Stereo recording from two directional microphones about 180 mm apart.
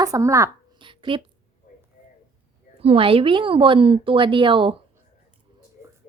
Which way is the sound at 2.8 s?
30° right (ahead or behind).